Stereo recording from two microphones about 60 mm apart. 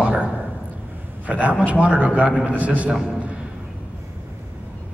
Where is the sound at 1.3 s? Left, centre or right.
Right.